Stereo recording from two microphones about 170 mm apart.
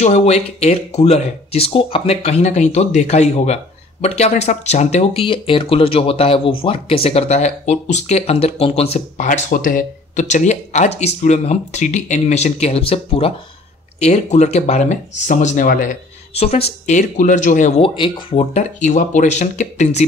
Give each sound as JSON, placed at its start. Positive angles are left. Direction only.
{"t": 0.0, "sound": "speech", "side_deg": 40}